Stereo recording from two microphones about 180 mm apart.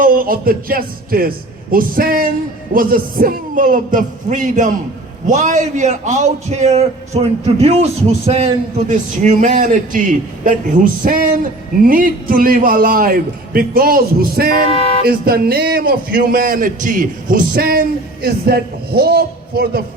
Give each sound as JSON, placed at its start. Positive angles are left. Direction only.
{"t": 0.0, "sound": "a man's voice", "side_deg": -50}
{"t": 14.7, "sound": "speech", "side_deg": 35}
{"t": 15.0, "sound": "a man's voice", "side_deg": -55}